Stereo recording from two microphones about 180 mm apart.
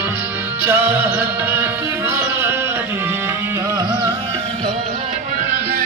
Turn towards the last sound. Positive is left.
turn(degrees=-25)  # may be behind; listen again after turning